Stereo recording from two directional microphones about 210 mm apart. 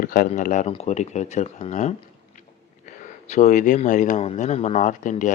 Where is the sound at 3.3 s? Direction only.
35° left (ahead or behind).